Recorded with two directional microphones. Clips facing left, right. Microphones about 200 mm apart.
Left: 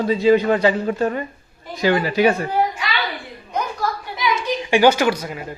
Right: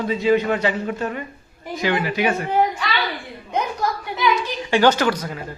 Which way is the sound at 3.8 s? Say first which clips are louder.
Left 1 dB; 20° right (ahead or behind).